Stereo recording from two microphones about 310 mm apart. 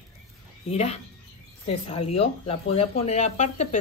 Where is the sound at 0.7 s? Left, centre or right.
Centre.